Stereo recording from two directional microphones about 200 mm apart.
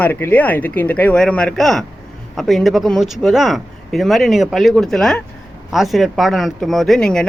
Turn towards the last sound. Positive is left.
turn(degrees=5)  # may be behind; listen again after turning